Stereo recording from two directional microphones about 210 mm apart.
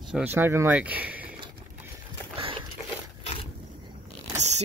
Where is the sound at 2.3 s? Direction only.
25° right (ahead or behind).